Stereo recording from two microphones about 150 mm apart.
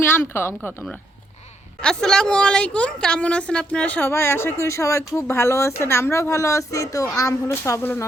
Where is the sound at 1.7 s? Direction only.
5° left (ahead or behind).